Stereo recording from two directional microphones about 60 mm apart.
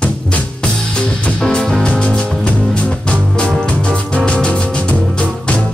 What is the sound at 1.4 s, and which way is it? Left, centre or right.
Music, centre.